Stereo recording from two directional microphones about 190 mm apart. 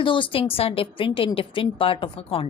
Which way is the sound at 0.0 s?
25° left (ahead or behind).